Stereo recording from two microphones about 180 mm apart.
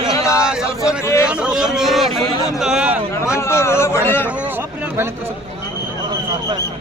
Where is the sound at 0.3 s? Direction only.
5° right (ahead or behind).